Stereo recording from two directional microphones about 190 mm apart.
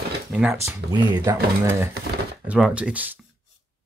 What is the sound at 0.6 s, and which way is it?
Speech, 20° right (ahead or behind).